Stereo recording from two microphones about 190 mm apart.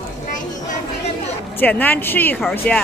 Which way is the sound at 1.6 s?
10° left (ahead or behind).